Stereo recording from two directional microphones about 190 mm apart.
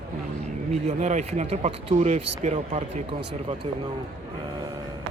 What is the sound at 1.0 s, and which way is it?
Speech, 40° right (ahead or behind).